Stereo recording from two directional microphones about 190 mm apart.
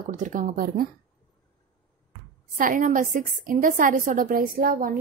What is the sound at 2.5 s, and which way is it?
A woman's voice, 45° right (ahead or behind).